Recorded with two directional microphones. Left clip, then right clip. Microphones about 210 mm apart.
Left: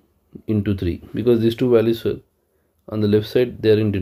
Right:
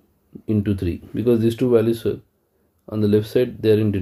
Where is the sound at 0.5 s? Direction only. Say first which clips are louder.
Even; 20° left (ahead or behind).